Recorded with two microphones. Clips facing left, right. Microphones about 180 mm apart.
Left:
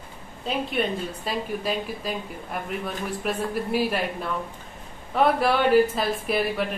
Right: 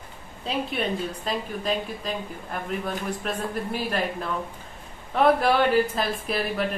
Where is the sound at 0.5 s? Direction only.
Centre (ahead or behind).